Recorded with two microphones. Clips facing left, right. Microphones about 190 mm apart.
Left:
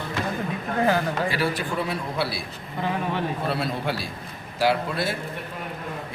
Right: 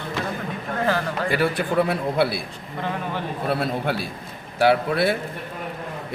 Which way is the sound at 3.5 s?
55° right (ahead or behind).